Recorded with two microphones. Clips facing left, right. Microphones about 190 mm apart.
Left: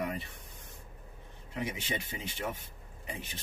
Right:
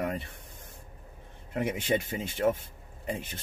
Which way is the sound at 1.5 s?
55° right (ahead or behind).